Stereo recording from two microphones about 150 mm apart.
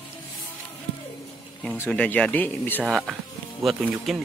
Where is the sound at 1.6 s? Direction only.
10° left (ahead or behind).